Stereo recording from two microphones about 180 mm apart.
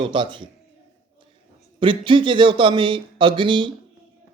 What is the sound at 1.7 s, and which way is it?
Speech, 30° right (ahead or behind).